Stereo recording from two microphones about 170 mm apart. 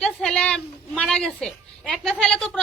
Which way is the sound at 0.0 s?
5° left (ahead or behind).